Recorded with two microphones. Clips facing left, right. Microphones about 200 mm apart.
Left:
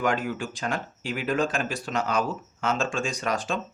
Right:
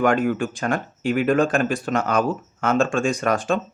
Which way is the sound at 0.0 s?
55° right (ahead or behind).